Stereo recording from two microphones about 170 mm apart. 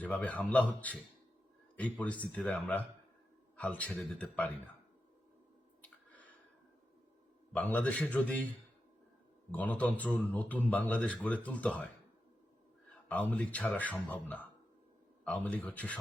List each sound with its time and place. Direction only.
0.0 s a man's voice: 10° left (ahead or behind)
7.5 s a man's voice: 10° left (ahead or behind)
13.1 s a man's voice: 10° left (ahead or behind)